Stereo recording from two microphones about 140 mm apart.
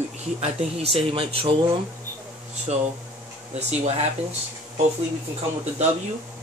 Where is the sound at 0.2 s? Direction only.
50° right (ahead or behind).